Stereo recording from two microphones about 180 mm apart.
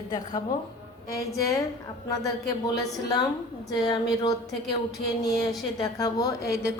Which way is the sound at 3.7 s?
20° left (ahead or behind).